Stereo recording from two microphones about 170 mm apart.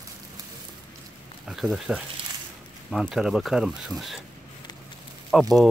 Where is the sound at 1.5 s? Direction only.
Centre (ahead or behind).